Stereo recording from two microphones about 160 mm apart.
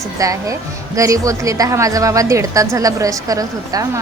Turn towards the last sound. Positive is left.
turn(degrees=-20)  # may be behind; listen again after turning